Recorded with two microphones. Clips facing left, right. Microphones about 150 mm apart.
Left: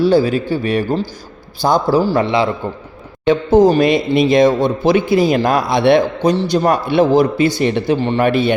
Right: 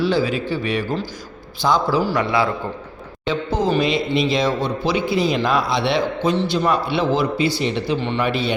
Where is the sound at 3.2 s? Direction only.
50° left (ahead or behind).